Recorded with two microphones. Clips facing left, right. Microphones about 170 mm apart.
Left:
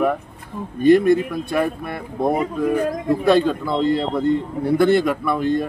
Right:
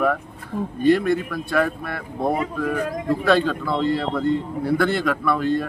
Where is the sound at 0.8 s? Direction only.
15° left (ahead or behind).